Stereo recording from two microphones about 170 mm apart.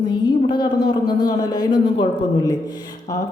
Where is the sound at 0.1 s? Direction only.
25° left (ahead or behind).